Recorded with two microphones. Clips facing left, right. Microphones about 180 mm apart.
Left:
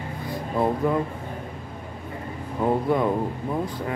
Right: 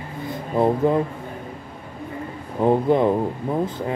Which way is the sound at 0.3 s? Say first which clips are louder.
Right 4 dB; 25° right (ahead or behind).